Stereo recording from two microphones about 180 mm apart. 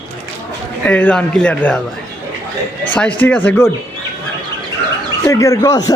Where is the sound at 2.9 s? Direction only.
10° left (ahead or behind).